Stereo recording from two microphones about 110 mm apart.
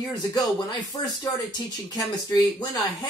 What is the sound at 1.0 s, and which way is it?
Speech, 35° left (ahead or behind).